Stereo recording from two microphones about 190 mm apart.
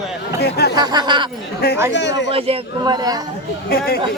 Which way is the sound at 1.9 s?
70° left (ahead or behind).